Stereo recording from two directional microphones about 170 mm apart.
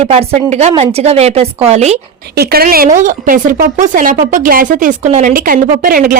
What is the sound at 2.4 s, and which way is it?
A woman's voice, 65° right (ahead or behind).